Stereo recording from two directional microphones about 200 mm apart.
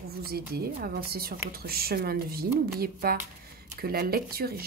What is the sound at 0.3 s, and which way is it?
Speech, 50° right (ahead or behind).